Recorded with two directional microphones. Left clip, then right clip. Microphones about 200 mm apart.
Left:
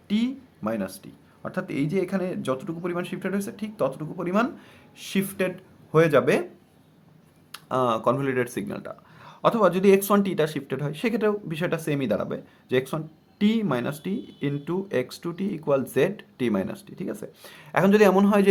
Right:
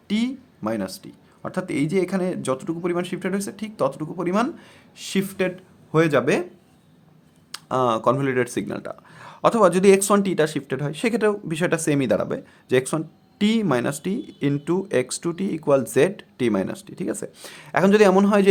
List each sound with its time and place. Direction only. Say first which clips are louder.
0.1 s speech: right 2 dB; 30° right (ahead or behind)
7.5 s speech: right 3 dB; 30° right (ahead or behind)